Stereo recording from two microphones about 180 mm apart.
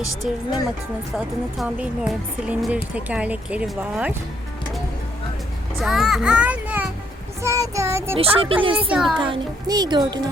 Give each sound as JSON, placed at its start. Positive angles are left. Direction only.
{"t": 0.2, "sound": "speech", "side_deg": -5}
{"t": 1.5, "sound": "speech", "side_deg": -5}
{"t": 5.8, "sound": "a child's voice", "side_deg": 0}
{"t": 7.4, "sound": "child singing", "side_deg": -20}
{"t": 8.1, "sound": "speech", "side_deg": -30}
{"t": 8.9, "sound": "speech", "side_deg": 0}
{"t": 9.1, "sound": "speech", "side_deg": -25}